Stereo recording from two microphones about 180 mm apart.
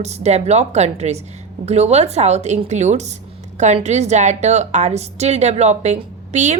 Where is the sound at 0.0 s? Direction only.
40° right (ahead or behind).